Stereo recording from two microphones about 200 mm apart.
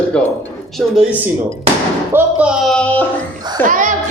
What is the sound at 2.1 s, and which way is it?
Speech, 5° right (ahead or behind).